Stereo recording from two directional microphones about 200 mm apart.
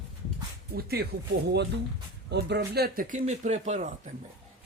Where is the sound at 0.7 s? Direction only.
50° right (ahead or behind).